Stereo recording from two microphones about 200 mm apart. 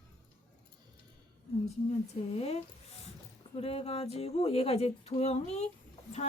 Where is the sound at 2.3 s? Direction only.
30° left (ahead or behind).